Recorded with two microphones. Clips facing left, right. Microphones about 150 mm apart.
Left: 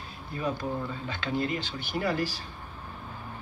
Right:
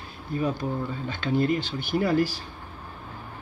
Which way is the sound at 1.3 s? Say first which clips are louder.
Right 7 dB; 45° right (ahead or behind).